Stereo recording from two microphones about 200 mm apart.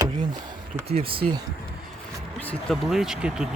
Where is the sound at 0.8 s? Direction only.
30° right (ahead or behind).